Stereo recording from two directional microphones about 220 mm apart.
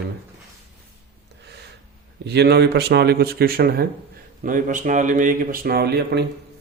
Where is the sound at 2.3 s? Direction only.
50° right (ahead or behind).